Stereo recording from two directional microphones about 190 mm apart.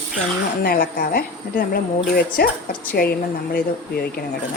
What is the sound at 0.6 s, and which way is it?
Speech, 50° left (ahead or behind).